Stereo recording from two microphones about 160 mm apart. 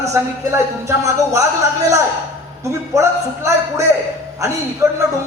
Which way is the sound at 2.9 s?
20° right (ahead or behind).